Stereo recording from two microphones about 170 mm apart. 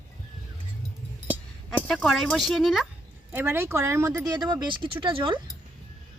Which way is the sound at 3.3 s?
15° right (ahead or behind).